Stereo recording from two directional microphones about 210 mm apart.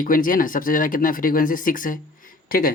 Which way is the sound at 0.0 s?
40° left (ahead or behind).